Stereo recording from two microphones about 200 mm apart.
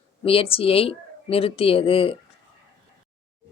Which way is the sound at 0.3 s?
30° left (ahead or behind).